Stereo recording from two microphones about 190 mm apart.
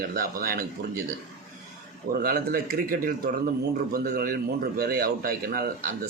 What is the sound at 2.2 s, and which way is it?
A man's voice, 50° right (ahead or behind).